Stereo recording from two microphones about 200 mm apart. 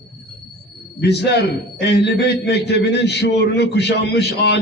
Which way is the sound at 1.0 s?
55° left (ahead or behind).